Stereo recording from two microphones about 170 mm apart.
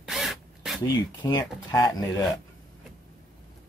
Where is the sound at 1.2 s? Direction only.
20° left (ahead or behind).